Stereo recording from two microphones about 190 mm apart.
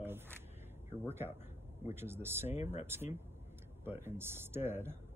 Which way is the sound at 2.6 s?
35° left (ahead or behind).